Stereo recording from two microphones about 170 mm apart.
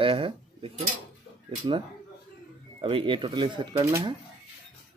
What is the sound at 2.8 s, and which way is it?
Speech, 30° right (ahead or behind).